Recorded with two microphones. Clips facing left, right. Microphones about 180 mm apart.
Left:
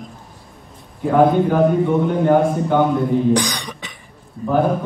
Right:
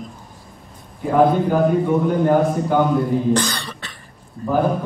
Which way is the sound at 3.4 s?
15° left (ahead or behind).